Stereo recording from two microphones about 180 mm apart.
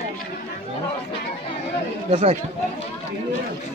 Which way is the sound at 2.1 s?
35° right (ahead or behind).